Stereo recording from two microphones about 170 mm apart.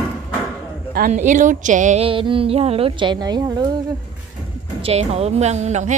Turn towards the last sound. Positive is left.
turn(degrees=-45)  # may be behind; listen again after turning